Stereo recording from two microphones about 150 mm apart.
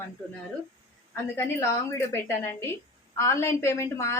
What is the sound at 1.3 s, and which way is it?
A woman's voice, 20° left (ahead or behind).